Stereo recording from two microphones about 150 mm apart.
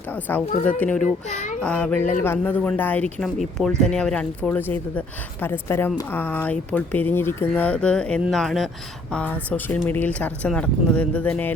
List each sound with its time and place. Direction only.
0.3 s speech: 10° left (ahead or behind)
1.0 s a child's voice: 55° left (ahead or behind)
1.6 s speech: 10° left (ahead or behind)
3.2 s speech: centre (ahead or behind)